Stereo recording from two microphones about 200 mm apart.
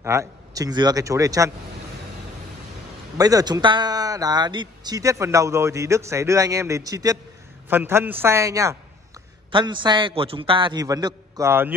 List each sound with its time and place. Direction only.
0.0 s speech: 15° right (ahead or behind)
3.2 s a man's voice: 20° right (ahead or behind)